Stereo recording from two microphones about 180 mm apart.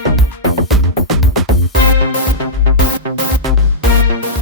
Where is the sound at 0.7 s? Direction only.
Centre (ahead or behind).